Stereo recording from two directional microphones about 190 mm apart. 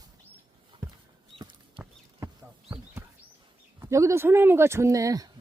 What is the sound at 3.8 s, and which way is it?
Speech, 15° right (ahead or behind).